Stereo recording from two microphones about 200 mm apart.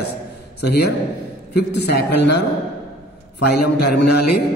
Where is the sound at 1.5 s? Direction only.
55° left (ahead or behind).